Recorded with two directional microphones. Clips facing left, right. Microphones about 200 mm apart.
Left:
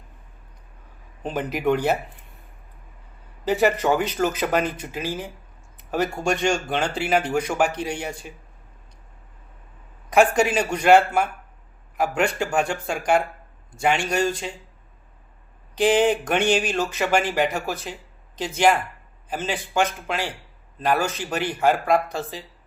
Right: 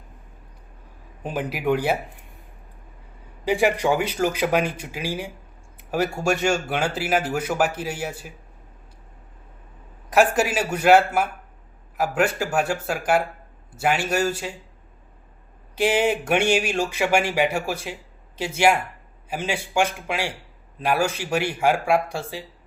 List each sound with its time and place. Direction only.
1.2 s speech: 10° right (ahead or behind)
3.4 s speech: 10° right (ahead or behind)
10.1 s a man's voice: 5° right (ahead or behind)
15.7 s speech: 10° right (ahead or behind)